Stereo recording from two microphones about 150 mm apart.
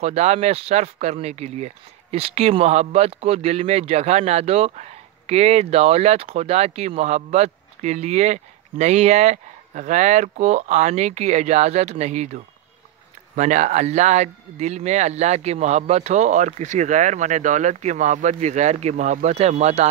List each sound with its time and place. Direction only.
0.0 s speech: 45° right (ahead or behind)
13.4 s speech: 55° right (ahead or behind)